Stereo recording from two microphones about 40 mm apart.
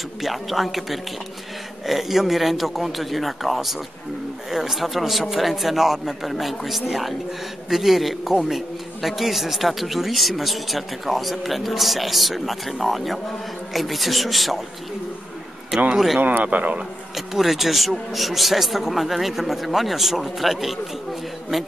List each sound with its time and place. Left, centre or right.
0.2 s a man's voice: centre
15.7 s a man's voice: centre
16.2 s speech: right
16.4 s a man's voice: right
17.1 s a man's voice: centre